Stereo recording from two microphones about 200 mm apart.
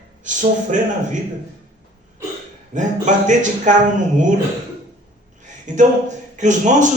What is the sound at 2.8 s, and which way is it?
Speech, 40° right (ahead or behind).